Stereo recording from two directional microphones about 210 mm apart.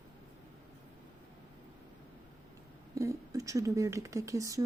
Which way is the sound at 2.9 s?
15° right (ahead or behind).